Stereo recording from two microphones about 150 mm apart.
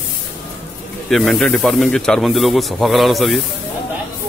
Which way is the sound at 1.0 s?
Centre (ahead or behind).